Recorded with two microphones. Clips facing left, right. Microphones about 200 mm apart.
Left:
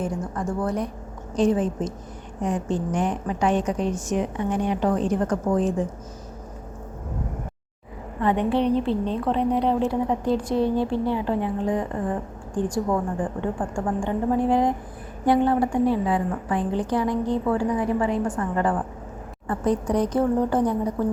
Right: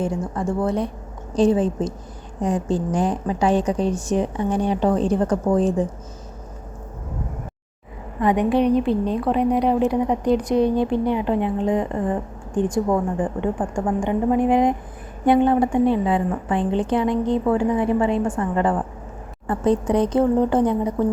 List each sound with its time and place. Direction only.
0.0 s a woman's voice: 25° right (ahead or behind)
8.2 s a woman's voice: 15° right (ahead or behind)